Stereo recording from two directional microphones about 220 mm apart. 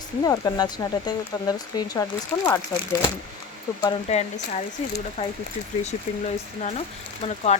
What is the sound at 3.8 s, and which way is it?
Speech, 25° left (ahead or behind).